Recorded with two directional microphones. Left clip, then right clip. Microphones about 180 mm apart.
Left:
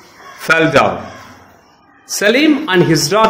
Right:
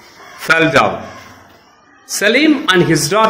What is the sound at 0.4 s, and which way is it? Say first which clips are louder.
Speech: even; centre (ahead or behind).